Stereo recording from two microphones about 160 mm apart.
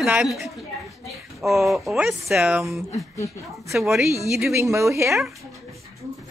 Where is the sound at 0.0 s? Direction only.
5° right (ahead or behind).